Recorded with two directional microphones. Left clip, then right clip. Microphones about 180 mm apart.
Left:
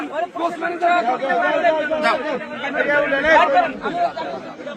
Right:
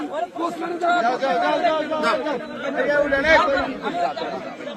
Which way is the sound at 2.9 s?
25° left (ahead or behind).